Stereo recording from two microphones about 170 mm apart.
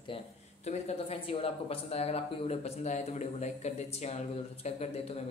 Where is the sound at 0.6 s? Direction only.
40° left (ahead or behind).